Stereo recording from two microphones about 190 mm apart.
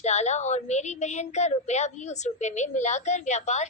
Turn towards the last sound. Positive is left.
turn(degrees=35)  # may be behind; listen again after turning